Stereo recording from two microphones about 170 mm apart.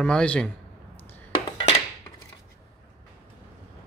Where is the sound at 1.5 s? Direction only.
30° left (ahead or behind).